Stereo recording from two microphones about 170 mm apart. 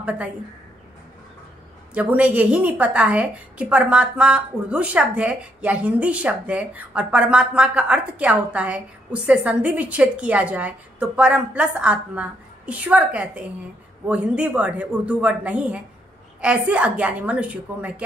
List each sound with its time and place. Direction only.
2.0 s a woman's voice: 10° right (ahead or behind)